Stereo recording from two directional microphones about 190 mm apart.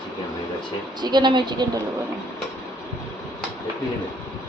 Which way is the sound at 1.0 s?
25° right (ahead or behind).